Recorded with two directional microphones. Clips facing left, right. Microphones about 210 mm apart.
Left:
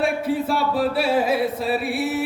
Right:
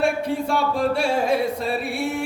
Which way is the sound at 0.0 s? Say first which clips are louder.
Even; 5° left (ahead or behind).